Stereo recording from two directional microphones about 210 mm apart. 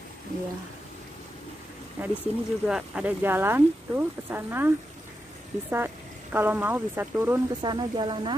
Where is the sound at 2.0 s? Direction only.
10° right (ahead or behind).